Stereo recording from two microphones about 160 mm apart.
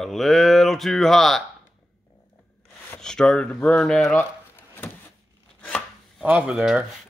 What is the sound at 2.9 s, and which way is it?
Speech, 5° left (ahead or behind).